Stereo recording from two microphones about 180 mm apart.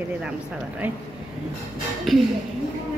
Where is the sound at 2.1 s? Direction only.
Centre (ahead or behind).